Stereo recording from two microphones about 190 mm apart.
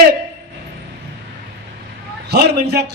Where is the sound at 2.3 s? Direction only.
60° right (ahead or behind).